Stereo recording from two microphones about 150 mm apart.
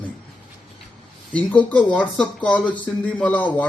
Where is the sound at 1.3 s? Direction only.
10° left (ahead or behind).